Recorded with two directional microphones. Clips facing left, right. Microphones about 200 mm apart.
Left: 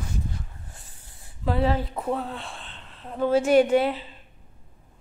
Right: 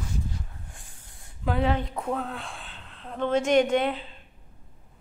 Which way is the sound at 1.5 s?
Centre (ahead or behind).